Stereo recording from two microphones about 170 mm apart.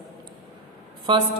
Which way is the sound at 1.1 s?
30° right (ahead or behind).